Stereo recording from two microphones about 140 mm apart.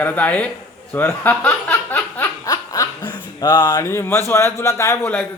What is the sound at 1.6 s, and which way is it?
Snicker, 10° left (ahead or behind).